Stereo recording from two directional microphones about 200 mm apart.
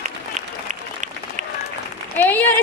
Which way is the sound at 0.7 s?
35° right (ahead or behind).